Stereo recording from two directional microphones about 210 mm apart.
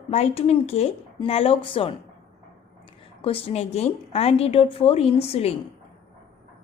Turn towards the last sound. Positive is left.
turn(degrees=30)  # may be behind; listen again after turning